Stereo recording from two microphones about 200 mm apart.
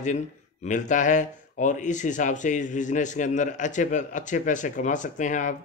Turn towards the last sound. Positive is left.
turn(degrees=40)  # may be behind; listen again after turning